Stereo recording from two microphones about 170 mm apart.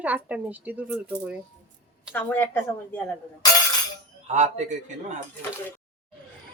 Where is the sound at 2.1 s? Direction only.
10° left (ahead or behind).